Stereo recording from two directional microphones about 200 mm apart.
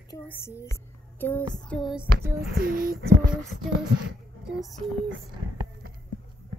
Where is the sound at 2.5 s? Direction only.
50° right (ahead or behind).